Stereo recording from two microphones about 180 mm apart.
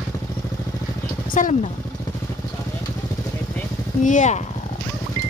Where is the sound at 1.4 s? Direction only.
45° left (ahead or behind).